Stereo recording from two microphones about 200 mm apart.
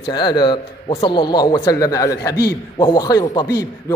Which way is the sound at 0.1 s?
20° left (ahead or behind).